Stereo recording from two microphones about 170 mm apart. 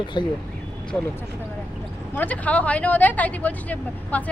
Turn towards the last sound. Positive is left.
turn(degrees=10)  # may be behind; listen again after turning